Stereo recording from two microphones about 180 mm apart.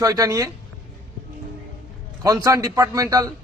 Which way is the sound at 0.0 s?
20° right (ahead or behind).